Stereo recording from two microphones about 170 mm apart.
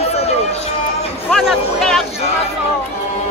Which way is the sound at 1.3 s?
Centre (ahead or behind).